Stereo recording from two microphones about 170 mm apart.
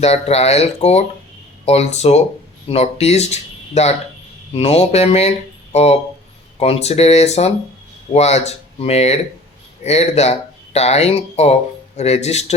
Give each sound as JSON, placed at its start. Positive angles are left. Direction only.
{"t": 0.0, "sound": "speech", "side_deg": 35}